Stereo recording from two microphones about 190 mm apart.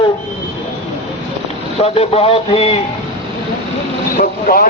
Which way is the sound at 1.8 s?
30° left (ahead or behind).